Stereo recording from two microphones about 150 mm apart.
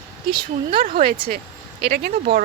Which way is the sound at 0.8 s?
60° right (ahead or behind).